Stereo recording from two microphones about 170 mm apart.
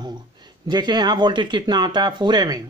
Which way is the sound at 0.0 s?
25° right (ahead or behind).